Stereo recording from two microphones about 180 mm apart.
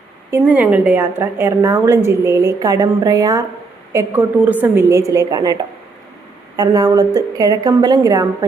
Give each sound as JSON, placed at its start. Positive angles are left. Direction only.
{"t": 0.3, "sound": "a woman's voice", "side_deg": -10}
{"t": 6.6, "sound": "a woman's voice", "side_deg": -20}